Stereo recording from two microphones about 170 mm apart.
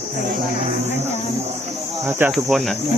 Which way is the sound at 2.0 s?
15° right (ahead or behind).